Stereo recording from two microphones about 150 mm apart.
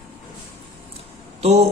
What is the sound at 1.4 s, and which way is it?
Speech, 45° right (ahead or behind).